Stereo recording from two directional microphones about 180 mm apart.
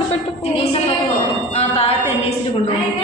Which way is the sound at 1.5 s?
35° left (ahead or behind).